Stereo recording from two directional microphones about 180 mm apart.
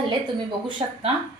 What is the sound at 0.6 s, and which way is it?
Speech, 25° right (ahead or behind).